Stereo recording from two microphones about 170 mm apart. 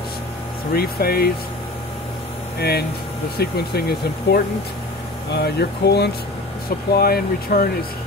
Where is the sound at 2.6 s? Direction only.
70° left (ahead or behind).